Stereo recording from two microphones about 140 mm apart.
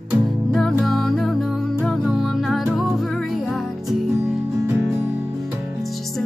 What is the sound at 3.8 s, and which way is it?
Music, 20° right (ahead or behind).